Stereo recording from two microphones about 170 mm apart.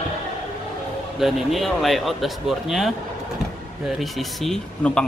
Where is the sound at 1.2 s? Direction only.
Centre (ahead or behind).